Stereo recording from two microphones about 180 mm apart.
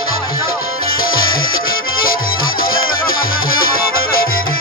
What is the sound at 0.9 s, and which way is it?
Music, 55° left (ahead or behind).